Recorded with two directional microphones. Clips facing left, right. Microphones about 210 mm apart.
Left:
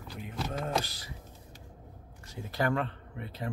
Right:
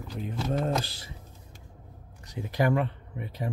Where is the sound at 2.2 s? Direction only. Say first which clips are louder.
Right 4 dB; 15° right (ahead or behind).